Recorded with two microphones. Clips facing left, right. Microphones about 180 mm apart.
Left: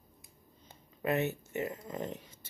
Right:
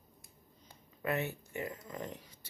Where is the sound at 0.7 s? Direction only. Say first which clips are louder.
Left 4 dB; 20° left (ahead or behind).